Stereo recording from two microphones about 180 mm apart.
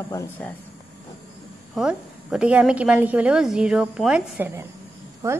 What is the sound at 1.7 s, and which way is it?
A woman's voice, 5° right (ahead or behind).